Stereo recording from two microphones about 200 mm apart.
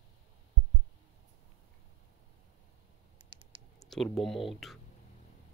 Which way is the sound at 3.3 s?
25° right (ahead or behind).